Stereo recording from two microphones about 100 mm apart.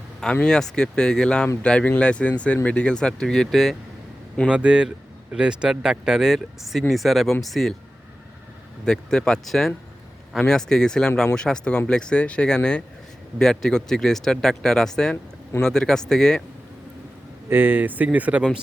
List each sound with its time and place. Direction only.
0.4 s speech: 5° left (ahead or behind)
4.4 s speech: 10° right (ahead or behind)
8.8 s speech: 5° left (ahead or behind)
17.5 s speech: 20° right (ahead or behind)